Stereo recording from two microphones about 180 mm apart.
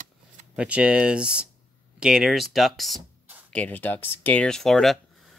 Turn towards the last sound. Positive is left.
turn(degrees=0)  # may be behind; listen again after turning